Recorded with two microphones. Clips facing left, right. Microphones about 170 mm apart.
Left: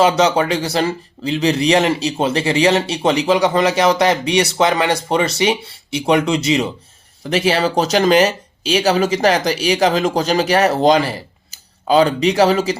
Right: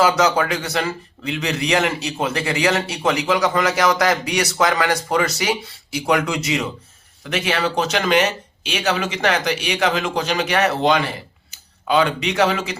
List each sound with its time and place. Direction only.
0.0 s speech: 25° left (ahead or behind)